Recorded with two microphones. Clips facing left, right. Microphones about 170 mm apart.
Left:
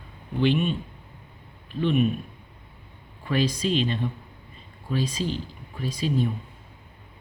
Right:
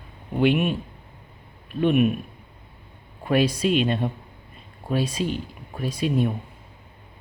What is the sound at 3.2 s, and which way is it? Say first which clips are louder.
Speech: right 4 dB; 60° right (ahead or behind).